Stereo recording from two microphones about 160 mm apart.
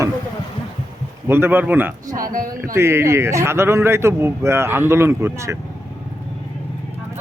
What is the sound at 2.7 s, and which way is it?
A man's voice, 15° right (ahead or behind).